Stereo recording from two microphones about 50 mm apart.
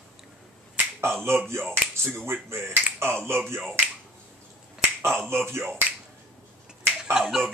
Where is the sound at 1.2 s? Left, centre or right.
Right.